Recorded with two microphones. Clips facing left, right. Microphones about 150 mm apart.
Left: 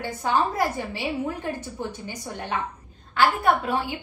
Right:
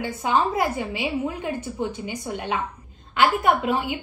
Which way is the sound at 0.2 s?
15° right (ahead or behind).